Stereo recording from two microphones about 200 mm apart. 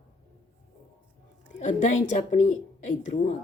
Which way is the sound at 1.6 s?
40° left (ahead or behind).